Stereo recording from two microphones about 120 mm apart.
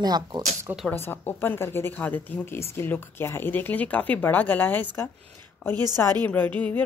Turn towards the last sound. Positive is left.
turn(degrees=15)  # may be behind; listen again after turning